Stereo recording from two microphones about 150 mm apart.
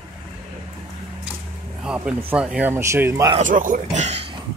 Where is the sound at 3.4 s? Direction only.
60° right (ahead or behind).